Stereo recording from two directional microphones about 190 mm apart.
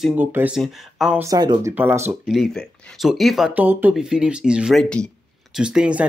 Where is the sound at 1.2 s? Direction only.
20° right (ahead or behind).